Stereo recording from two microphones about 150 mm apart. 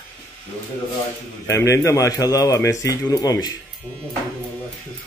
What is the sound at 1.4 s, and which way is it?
Speech, 20° left (ahead or behind).